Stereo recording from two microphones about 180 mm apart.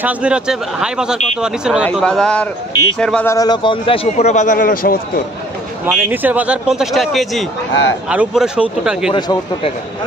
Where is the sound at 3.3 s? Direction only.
25° left (ahead or behind); by 5.2 s 50° left (ahead or behind).